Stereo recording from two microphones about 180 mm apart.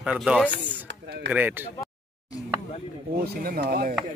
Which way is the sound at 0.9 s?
75° right (ahead or behind).